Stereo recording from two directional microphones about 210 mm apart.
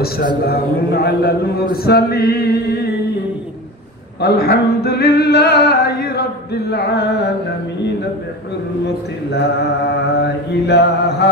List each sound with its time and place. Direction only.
0.5 s singing: 50° left (ahead or behind)
4.2 s singing: 50° left (ahead or behind)
9.3 s singing: 55° left (ahead or behind)